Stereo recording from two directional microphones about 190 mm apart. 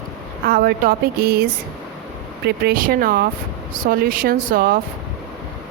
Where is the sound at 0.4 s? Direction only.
50° right (ahead or behind).